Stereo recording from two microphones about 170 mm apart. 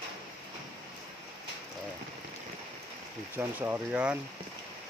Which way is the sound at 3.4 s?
10° right (ahead or behind).